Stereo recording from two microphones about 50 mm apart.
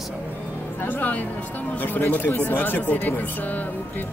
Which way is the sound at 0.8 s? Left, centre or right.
Left.